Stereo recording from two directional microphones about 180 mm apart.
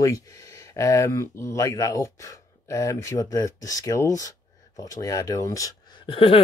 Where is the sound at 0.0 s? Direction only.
20° left (ahead or behind).